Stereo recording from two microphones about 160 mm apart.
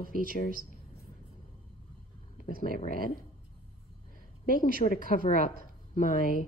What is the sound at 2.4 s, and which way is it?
Speech, 60° left (ahead or behind).